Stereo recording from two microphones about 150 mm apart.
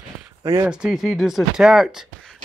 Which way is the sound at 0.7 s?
5° right (ahead or behind).